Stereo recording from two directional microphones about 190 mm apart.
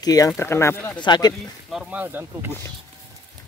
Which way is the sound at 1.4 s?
Centre (ahead or behind).